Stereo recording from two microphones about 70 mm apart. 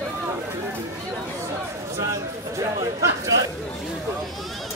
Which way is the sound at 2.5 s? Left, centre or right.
Right.